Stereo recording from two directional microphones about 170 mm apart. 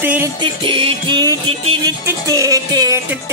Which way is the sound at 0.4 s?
30° right (ahead or behind).